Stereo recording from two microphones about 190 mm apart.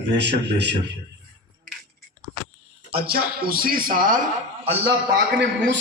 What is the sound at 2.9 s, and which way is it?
A man's voice, 55° right (ahead or behind).